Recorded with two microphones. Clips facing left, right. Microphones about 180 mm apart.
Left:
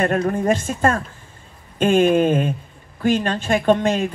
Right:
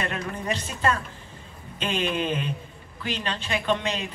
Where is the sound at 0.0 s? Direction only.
45° left (ahead or behind).